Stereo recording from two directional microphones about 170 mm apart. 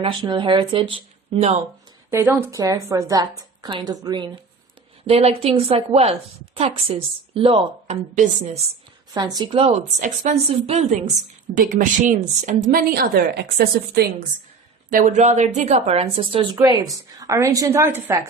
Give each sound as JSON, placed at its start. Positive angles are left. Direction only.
{"t": 0.0, "sound": "a woman's voice", "side_deg": -30}
{"t": 2.0, "sound": "a woman's voice", "side_deg": -15}
{"t": 5.0, "sound": "a woman's voice", "side_deg": -35}
{"t": 9.1, "sound": "a woman's voice", "side_deg": -25}
{"t": 10.0, "sound": "a woman's voice", "side_deg": -45}
{"t": 11.5, "sound": "a woman's voice", "side_deg": -55}
{"t": 14.8, "sound": "a woman's voice", "side_deg": -50}
{"t": 16.6, "sound": "a woman's voice", "side_deg": -20}